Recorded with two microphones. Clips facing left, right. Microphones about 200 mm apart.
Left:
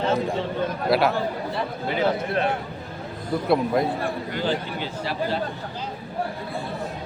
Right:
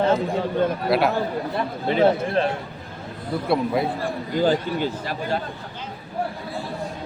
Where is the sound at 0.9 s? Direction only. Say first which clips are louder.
Left 2 dB; centre (ahead or behind).